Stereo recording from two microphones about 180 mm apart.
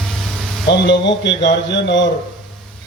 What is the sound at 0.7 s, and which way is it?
A man's voice, 75° left (ahead or behind).